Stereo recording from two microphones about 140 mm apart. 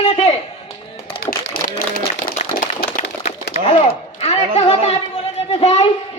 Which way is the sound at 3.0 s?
50° left (ahead or behind).